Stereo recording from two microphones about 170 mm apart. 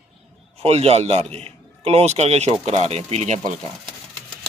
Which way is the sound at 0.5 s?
35° right (ahead or behind).